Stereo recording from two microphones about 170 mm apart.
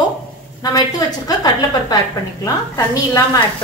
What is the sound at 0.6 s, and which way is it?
A woman's voice, 20° left (ahead or behind).